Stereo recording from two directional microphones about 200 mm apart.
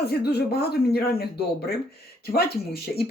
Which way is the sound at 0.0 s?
50° left (ahead or behind).